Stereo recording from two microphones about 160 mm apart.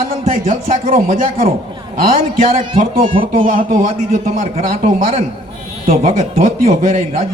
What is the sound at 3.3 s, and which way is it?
Speech, 60° right (ahead or behind).